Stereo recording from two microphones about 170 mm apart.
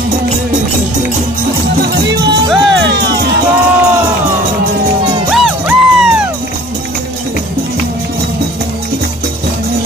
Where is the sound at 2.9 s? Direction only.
80° right.